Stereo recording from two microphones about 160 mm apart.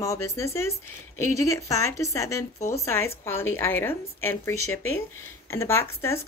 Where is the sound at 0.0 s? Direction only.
20° left (ahead or behind).